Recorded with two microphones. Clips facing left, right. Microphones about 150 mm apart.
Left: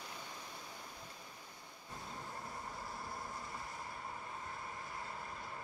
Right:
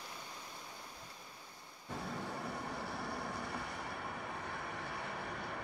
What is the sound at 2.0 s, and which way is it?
Vehicle, 80° right.